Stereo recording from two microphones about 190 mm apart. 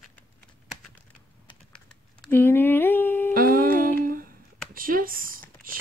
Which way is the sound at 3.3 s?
50° right (ahead or behind).